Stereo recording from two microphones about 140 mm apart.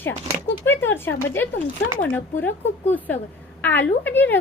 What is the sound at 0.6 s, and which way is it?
A woman's voice, 15° left (ahead or behind).